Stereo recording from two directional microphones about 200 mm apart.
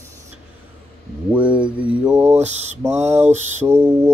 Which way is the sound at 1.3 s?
5° right (ahead or behind).